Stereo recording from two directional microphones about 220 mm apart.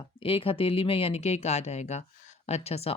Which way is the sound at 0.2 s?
25° left (ahead or behind).